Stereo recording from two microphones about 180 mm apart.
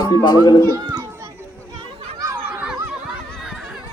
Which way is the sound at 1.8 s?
30° right (ahead or behind).